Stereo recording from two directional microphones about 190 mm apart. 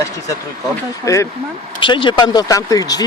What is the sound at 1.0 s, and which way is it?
Speech, 15° left (ahead or behind).